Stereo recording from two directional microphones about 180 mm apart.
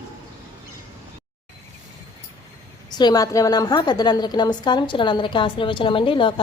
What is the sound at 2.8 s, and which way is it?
A woman's voice, 25° left (ahead or behind).